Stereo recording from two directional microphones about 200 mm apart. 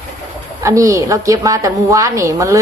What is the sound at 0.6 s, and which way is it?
A woman's voice, 15° right (ahead or behind).